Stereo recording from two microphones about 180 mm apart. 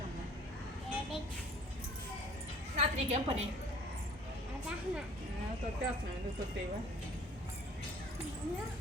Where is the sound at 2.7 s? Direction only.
40° right (ahead or behind).